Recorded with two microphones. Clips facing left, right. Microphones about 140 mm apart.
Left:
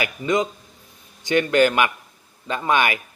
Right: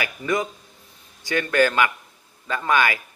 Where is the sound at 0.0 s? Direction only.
20° left (ahead or behind).